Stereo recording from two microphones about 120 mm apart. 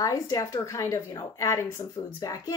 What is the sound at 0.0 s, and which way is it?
A woman's voice, 30° left (ahead or behind).